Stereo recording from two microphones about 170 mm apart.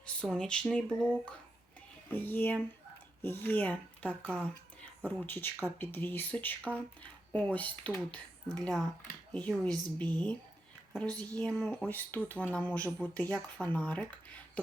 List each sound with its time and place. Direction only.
0.0 s a sound: 5° left (ahead or behind)
2.1 s speech: 10° left (ahead or behind)
11.0 s speech: 25° right (ahead or behind)
11.3 s speech: 5° left (ahead or behind)